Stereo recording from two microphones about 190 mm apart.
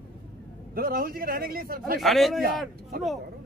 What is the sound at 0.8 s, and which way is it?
A man's voice, 50° right (ahead or behind).